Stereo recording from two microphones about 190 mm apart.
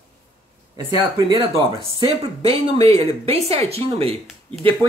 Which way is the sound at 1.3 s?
25° right (ahead or behind).